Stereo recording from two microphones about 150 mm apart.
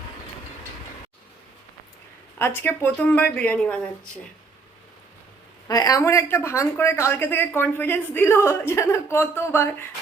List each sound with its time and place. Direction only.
2.4 s a woman's voice: 15° left (ahead or behind)
5.6 s a woman's voice: 25° left (ahead or behind)